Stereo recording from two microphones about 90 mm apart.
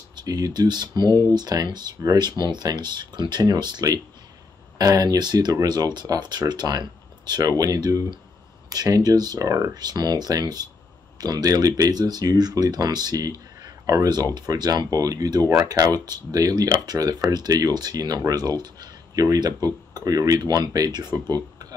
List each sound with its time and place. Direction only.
0.1 s speech: 50° right (ahead or behind)
13.6 s a sound: 45° right (ahead or behind)
14.5 s speech: 45° right (ahead or behind)